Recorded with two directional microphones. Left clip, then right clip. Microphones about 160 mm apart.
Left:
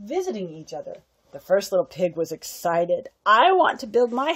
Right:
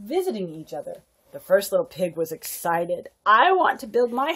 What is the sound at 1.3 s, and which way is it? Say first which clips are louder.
Speech: right 1 dB; 45° left (ahead or behind).